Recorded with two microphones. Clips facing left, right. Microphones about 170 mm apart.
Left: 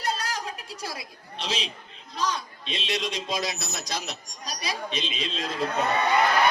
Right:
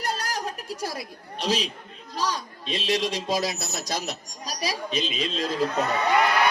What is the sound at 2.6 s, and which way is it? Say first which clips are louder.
A woman's voice: right 5 dB; 40° right (ahead or behind).